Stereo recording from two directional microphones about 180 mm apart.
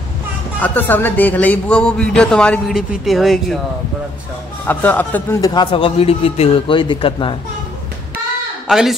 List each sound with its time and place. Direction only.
0.6 s a man's voice: 10° left (ahead or behind)
4.6 s a man's voice: 10° left (ahead or behind)
5.4 s a man's voice: 25° left (ahead or behind)
8.6 s speech: centre (ahead or behind)